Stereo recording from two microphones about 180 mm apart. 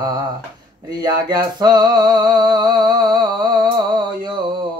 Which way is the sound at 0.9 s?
20° right (ahead or behind).